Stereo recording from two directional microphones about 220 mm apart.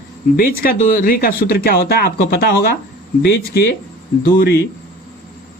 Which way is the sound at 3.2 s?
50° left (ahead or behind).